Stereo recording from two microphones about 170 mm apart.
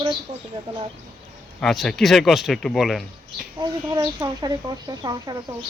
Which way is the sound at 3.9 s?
25° right (ahead or behind).